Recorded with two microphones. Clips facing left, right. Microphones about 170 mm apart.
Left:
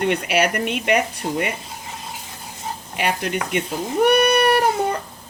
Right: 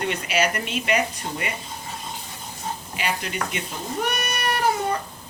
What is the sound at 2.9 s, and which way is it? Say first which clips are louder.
Speech: left 7 dB; 55° left (ahead or behind).